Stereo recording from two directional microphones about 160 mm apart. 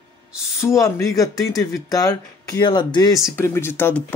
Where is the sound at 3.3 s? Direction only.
15° left (ahead or behind).